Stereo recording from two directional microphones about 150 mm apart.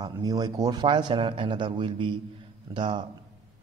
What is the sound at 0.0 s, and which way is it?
A man's voice, 25° right (ahead or behind).